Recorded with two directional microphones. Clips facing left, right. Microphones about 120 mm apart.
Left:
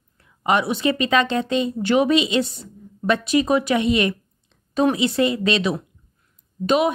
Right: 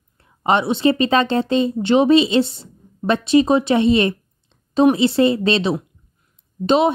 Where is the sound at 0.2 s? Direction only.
30° right (ahead or behind).